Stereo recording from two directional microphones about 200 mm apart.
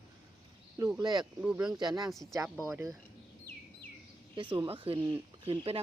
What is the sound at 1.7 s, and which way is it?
Speech, 20° right (ahead or behind).